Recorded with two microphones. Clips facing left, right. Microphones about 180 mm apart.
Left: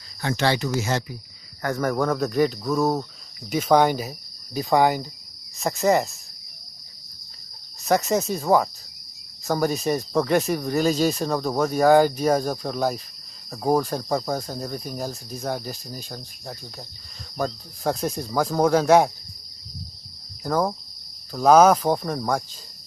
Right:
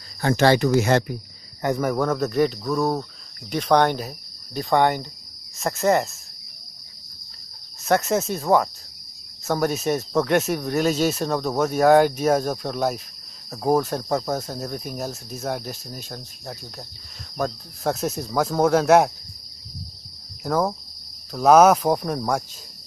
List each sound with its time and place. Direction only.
0.2 s speech: 45° right (ahead or behind)
1.8 s speech: 5° right (ahead or behind)
7.8 s speech: centre (ahead or behind)
20.4 s speech: 5° right (ahead or behind)